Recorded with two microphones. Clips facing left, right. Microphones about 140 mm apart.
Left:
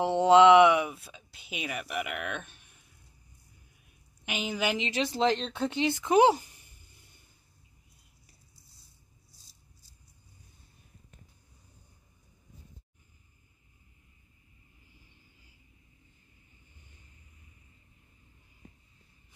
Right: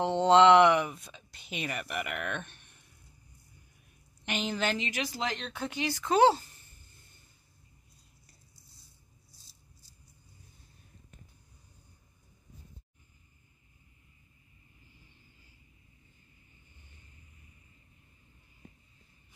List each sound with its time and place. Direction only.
0.0 s speech: 5° left (ahead or behind)
4.2 s a woman's voice: 5° left (ahead or behind)
4.8 s speech: 25° left (ahead or behind)